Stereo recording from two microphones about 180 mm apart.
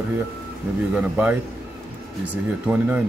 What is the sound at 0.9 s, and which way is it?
A man's voice, 5° right (ahead or behind).